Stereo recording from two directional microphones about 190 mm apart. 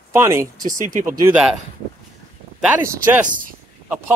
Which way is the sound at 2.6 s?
5° right (ahead or behind).